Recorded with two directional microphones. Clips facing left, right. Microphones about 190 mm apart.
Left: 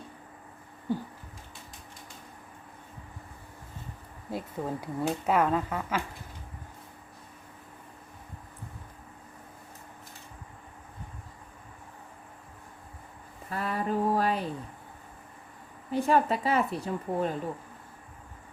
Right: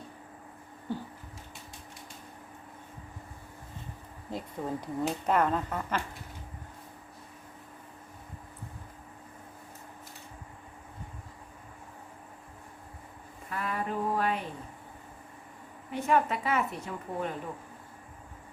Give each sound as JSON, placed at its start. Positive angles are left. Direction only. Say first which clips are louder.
{"t": 0.9, "sound": "speech", "louder": "left 4 dB", "side_deg": 15}
{"t": 4.3, "sound": "speech", "louder": "left 1 dB", "side_deg": 10}
{"t": 13.5, "sound": "a sound", "louder": "left 3 dB", "side_deg": 35}
{"t": 15.9, "sound": "a woman's voice", "louder": "left 2 dB", "side_deg": 35}